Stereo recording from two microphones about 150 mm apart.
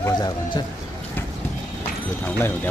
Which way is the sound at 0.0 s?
25° left (ahead or behind).